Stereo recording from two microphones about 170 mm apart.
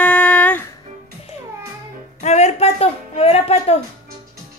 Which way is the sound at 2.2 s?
40° left (ahead or behind).